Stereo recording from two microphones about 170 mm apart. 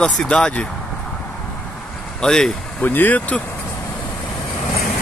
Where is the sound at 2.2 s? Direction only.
5° left (ahead or behind).